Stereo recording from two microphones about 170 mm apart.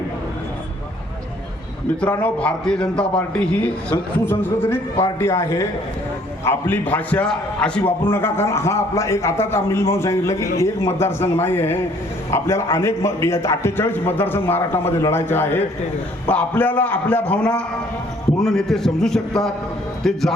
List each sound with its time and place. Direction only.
2.0 s a man's voice: 10° left (ahead or behind)